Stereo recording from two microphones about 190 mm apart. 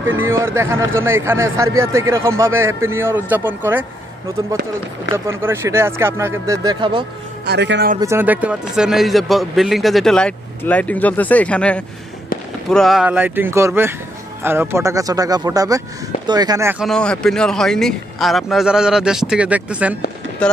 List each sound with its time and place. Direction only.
0.3 s a man's voice: 15° right (ahead or behind)
5.4 s a man's voice: 15° right (ahead or behind)
7.4 s a man's voice: 65° right (ahead or behind)
8.0 s a man's voice: 15° right (ahead or behind)
16.8 s a man's voice: 5° left (ahead or behind)